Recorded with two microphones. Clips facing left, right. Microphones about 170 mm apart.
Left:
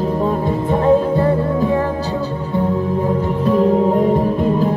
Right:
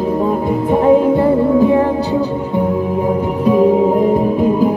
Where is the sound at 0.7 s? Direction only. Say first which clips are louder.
Right 4 dB; 15° right (ahead or behind).